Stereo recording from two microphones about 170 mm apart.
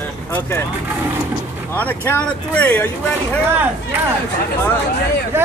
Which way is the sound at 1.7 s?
10° left (ahead or behind).